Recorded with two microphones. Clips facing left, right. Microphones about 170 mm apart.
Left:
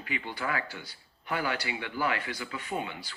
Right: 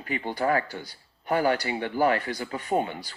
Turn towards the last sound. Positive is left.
turn(degrees=-40)  # may be behind; listen again after turning